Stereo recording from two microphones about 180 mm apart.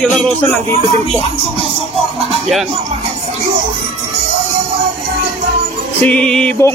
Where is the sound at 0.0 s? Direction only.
5° left (ahead or behind).